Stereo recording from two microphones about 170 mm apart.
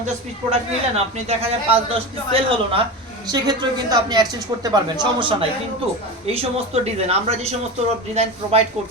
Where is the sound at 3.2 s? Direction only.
25° right (ahead or behind).